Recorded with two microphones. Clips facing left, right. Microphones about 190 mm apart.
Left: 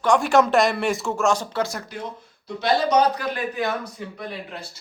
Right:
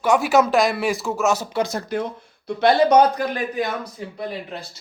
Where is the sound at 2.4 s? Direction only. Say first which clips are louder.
Right 5 dB; 60° right (ahead or behind).